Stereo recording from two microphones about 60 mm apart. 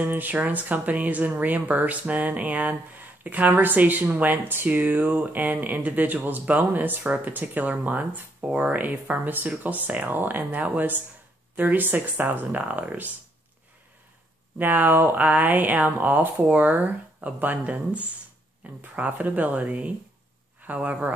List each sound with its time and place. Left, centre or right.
0.0 s speech: right
14.6 s speech: right